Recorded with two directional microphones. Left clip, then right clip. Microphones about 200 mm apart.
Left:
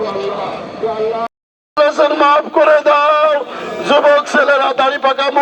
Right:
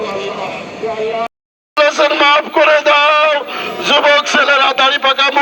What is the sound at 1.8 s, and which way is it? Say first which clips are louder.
A man's voice: even; 50° left (ahead or behind).